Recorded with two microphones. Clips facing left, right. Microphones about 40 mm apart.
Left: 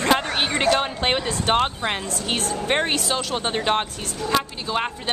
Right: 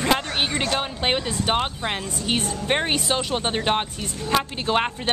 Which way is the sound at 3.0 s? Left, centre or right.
Centre.